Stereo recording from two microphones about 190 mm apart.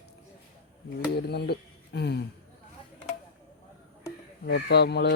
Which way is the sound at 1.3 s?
60° left (ahead or behind).